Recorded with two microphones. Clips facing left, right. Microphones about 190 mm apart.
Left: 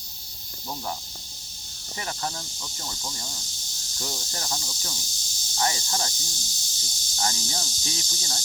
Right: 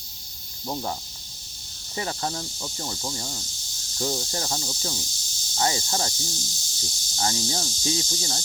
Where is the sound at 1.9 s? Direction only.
25° right (ahead or behind).